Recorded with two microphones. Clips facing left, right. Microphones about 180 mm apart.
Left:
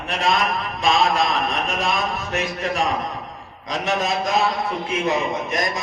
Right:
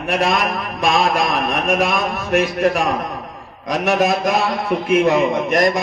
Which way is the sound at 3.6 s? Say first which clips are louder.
Right 6 dB; 75° right (ahead or behind).